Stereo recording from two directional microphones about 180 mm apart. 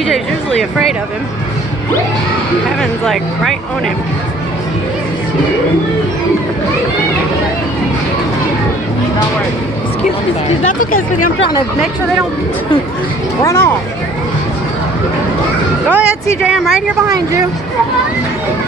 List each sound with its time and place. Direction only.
0.1 s speech: centre (ahead or behind)
2.8 s speech: centre (ahead or behind)
10.7 s speech: 50° left (ahead or behind)
13.4 s speech: 15° left (ahead or behind)
15.9 s speech: 5° right (ahead or behind)